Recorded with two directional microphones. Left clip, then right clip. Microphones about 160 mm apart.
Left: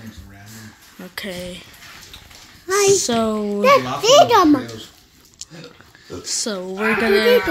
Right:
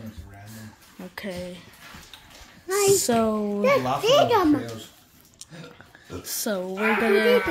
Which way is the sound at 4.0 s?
65° left (ahead or behind).